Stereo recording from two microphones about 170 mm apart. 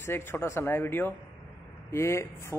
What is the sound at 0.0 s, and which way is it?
Speech, 15° left (ahead or behind).